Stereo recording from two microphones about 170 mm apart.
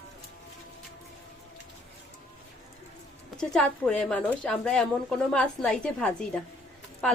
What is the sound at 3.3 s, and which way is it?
A woman's voice, 5° left (ahead or behind).